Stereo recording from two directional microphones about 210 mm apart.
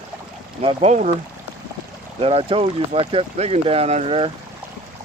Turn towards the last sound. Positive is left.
turn(degrees=-25)  # may be behind; listen again after turning